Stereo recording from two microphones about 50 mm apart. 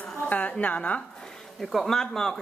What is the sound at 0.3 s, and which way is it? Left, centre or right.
Speech, left.